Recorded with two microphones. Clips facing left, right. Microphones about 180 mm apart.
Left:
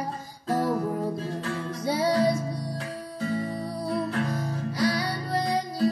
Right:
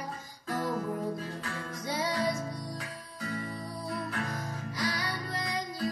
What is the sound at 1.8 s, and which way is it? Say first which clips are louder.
Music: left 8 dB; 35° left (ahead or behind).